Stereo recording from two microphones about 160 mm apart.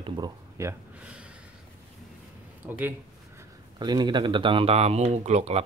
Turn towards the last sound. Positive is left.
turn(degrees=-45)  # may be behind; listen again after turning